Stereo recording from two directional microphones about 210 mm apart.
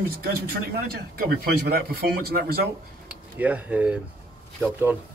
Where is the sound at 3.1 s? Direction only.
5° right (ahead or behind).